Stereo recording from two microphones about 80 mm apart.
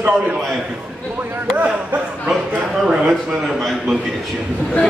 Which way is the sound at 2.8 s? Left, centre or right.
Centre.